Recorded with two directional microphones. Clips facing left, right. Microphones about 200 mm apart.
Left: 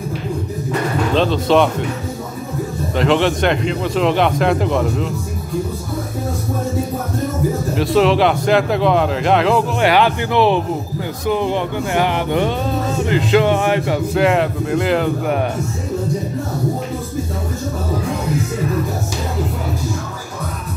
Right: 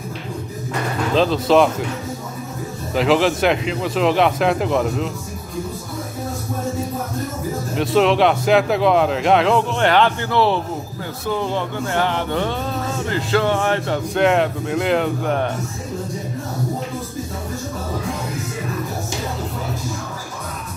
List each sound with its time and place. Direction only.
1.1 s a man's voice: centre (ahead or behind)
3.0 s a man's voice: centre (ahead or behind)
7.7 s a man's voice: centre (ahead or behind)